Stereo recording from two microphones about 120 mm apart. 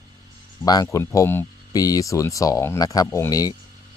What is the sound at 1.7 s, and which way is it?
Speech, 30° left (ahead or behind).